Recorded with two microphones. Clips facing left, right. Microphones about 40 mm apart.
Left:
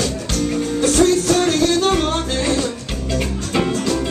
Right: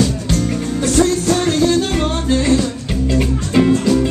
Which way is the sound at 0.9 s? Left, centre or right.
Right.